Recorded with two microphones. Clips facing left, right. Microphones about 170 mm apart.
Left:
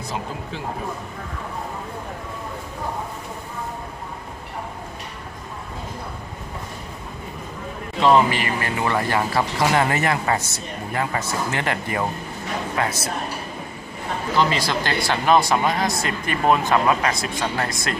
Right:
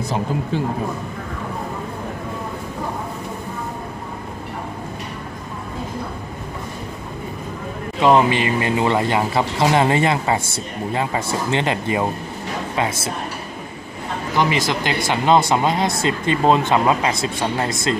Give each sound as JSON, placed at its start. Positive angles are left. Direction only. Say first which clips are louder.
{"t": 8.0, "sound": "speech", "louder": "right 2 dB", "side_deg": -20}
{"t": 14.3, "sound": "speech", "louder": "right 2 dB", "side_deg": -15}